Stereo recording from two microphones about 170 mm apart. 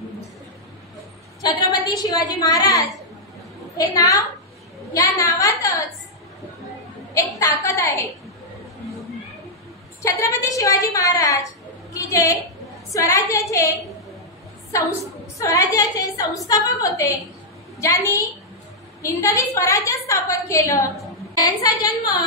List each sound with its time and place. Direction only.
1.4 s a woman's voice: 20° left (ahead or behind)
7.3 s a woman's voice: 15° left (ahead or behind)
10.0 s a woman's voice: 20° left (ahead or behind)
14.7 s a woman's voice: 20° left (ahead or behind)